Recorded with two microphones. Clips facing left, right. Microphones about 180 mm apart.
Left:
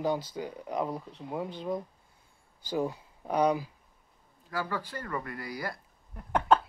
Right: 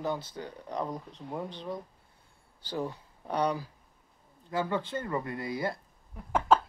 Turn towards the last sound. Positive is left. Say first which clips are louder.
# even
turn(degrees=0)  # may be behind; listen again after turning